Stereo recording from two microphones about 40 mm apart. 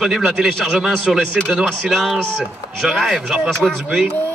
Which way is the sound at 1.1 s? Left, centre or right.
Centre.